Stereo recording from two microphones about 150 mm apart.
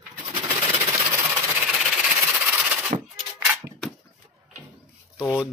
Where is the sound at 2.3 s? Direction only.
10° right (ahead or behind).